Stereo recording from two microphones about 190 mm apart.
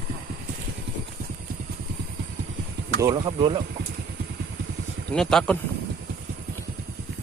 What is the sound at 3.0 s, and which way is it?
Speech, 25° right (ahead or behind).